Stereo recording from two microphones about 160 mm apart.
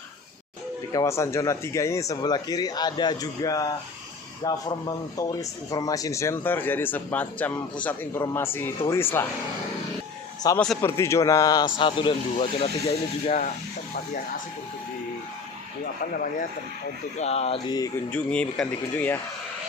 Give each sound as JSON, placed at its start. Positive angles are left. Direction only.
{"t": 0.9, "sound": "speech", "side_deg": 20}
{"t": 10.4, "sound": "speech", "side_deg": 25}
{"t": 17.2, "sound": "speech", "side_deg": 40}
{"t": 17.7, "sound": "speech", "side_deg": 25}
{"t": 18.1, "sound": "speech", "side_deg": 5}